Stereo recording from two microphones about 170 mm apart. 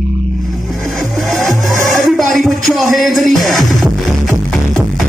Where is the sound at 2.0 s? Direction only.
Centre (ahead or behind).